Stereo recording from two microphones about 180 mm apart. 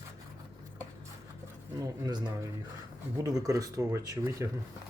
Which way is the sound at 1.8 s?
20° right (ahead or behind).